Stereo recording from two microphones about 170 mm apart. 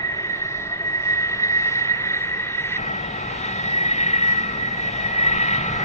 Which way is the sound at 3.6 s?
40° left (ahead or behind).